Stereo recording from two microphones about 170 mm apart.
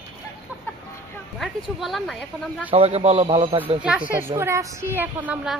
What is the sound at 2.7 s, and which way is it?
Speech, 35° right (ahead or behind).